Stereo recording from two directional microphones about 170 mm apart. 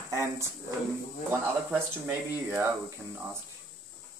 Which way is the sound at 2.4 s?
10° right (ahead or behind).